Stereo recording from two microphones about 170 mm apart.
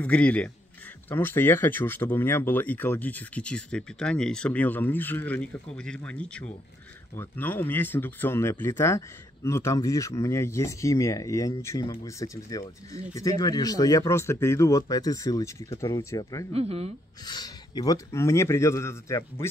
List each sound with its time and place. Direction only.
0.0 s speech: 10° left (ahead or behind)
16.5 s speech: 35° right (ahead or behind)
17.2 s speech: 25° left (ahead or behind)